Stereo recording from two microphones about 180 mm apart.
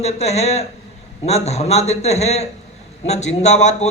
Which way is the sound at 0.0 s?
35° left (ahead or behind).